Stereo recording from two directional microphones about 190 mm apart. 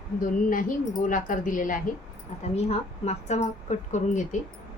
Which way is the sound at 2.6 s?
35° left (ahead or behind).